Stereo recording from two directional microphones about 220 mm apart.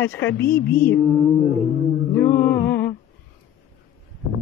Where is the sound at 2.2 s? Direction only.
10° left (ahead or behind).